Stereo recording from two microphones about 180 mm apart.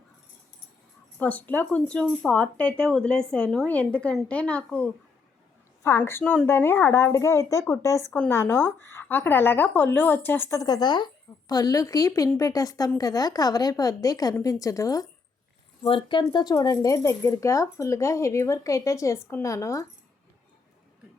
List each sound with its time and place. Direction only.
1.2 s a woman's voice: 10° left (ahead or behind)